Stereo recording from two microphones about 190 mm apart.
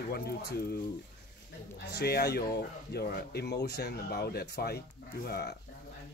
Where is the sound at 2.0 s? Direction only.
55° left (ahead or behind).